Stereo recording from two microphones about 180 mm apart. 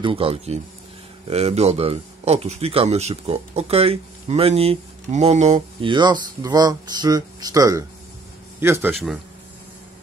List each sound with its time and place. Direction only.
0.0 s a man's voice: 30° right (ahead or behind); by 8.9 s 10° right (ahead or behind)